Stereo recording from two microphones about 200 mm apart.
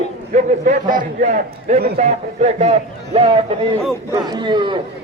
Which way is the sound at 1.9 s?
35° right (ahead or behind).